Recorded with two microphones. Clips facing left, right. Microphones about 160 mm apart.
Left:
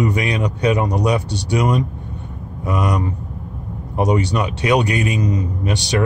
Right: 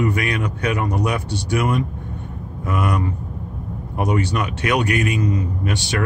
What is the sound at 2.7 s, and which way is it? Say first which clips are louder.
Speech: left 2 dB; 35° left (ahead or behind).